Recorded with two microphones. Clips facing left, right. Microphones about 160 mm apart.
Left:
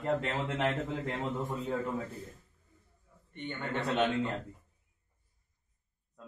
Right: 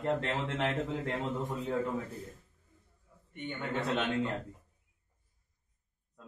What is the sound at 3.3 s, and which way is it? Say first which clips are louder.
Speech: even; 10° right (ahead or behind).